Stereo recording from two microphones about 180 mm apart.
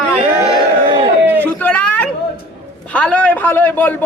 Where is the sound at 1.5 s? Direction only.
10° left (ahead or behind).